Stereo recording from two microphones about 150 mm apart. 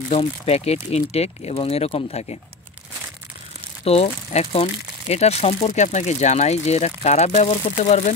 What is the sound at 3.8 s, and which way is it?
Speech, 40° left (ahead or behind).